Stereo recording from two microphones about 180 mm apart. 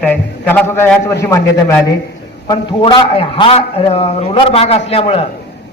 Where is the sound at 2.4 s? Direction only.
30° left (ahead or behind).